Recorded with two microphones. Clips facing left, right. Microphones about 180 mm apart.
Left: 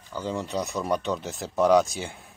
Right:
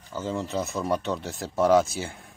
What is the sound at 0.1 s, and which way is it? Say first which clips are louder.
Speech: even; centre (ahead or behind).